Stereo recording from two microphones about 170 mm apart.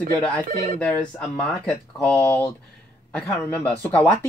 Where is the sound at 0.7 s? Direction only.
5° left (ahead or behind).